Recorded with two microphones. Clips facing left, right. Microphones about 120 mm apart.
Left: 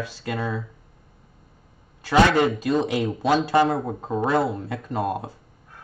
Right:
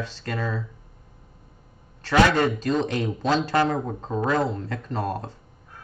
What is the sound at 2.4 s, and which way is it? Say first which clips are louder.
Speech: left 2 dB; 10° left (ahead or behind).